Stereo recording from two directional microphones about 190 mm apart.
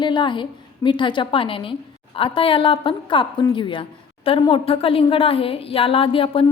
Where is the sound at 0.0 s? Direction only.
25° left (ahead or behind).